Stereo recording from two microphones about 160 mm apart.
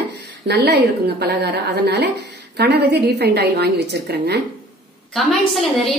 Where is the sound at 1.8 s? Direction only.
90° right.